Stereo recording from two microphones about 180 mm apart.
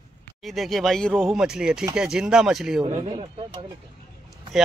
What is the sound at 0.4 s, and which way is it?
Speech, centre (ahead or behind).